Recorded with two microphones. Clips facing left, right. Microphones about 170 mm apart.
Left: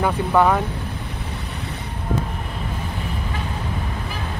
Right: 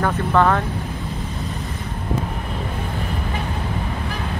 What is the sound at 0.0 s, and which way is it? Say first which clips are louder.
Speech: even; 10° left (ahead or behind).